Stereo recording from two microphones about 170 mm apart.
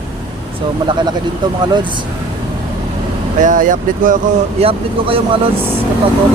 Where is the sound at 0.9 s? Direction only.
25° right (ahead or behind).